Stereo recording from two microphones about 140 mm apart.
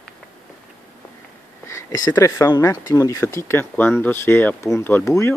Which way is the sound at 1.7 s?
25° left (ahead or behind).